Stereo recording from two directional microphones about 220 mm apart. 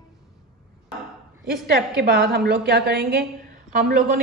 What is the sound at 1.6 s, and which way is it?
A woman's voice, 45° right (ahead or behind).